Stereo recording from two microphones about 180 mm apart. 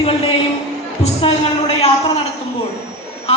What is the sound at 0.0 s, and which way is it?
Speech, 30° left (ahead or behind).